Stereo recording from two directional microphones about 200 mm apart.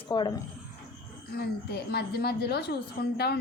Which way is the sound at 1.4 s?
55° left (ahead or behind).